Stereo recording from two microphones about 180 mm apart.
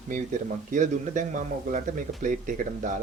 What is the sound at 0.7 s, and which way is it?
Speech, 45° right (ahead or behind).